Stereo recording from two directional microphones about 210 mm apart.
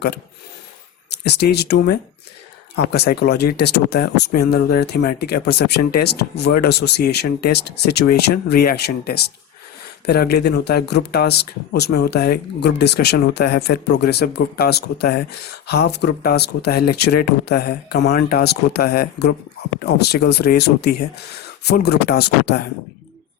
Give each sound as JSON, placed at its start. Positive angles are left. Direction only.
{"t": 1.1, "sound": "speech", "side_deg": 50}